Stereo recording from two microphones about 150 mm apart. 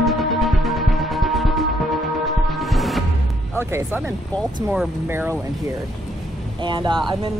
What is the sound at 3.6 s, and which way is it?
Speech, 15° right (ahead or behind).